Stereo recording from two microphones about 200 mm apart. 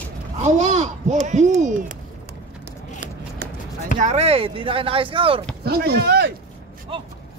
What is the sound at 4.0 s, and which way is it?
Speech, 35° right (ahead or behind).